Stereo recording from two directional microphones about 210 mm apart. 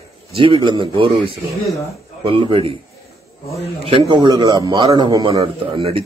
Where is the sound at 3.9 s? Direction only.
20° right (ahead or behind).